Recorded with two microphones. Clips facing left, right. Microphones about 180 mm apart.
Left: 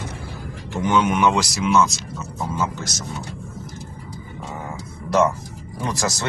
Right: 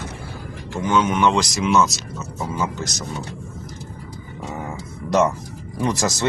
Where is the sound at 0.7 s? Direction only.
15° left (ahead or behind); by 1.9 s centre (ahead or behind).